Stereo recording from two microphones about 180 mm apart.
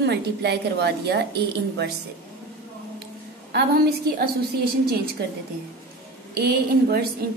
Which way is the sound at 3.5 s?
60° right (ahead or behind).